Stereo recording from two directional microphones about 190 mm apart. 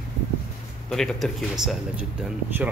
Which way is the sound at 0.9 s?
Centre (ahead or behind).